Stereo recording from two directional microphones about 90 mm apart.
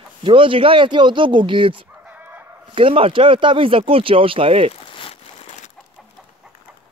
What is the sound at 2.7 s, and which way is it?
Speech, 90° right.